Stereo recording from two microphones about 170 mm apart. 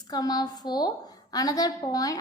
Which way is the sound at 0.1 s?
20° left (ahead or behind).